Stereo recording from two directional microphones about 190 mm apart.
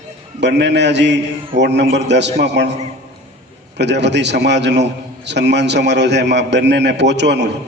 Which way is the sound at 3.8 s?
65° right (ahead or behind).